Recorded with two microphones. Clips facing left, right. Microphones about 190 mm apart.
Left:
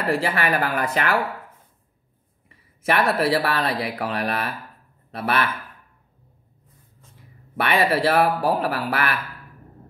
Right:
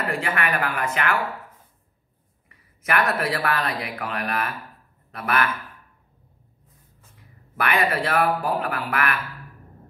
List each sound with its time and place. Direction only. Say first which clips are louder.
0.2 s speech: left 3 dB; 30° left (ahead or behind)
2.8 s speech: left 3 dB; 30° left (ahead or behind)
7.5 s speech: left 3 dB; 30° left (ahead or behind)